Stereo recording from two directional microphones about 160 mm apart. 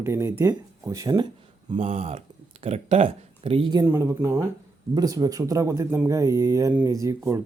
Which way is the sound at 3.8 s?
15° right (ahead or behind).